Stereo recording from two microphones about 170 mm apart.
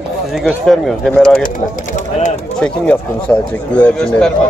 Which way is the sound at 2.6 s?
10° left (ahead or behind).